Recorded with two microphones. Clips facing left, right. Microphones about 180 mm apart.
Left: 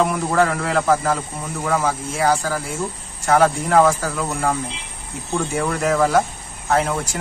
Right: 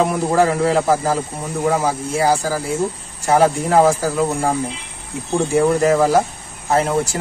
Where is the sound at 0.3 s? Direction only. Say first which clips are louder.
Right 4 dB; 15° right (ahead or behind).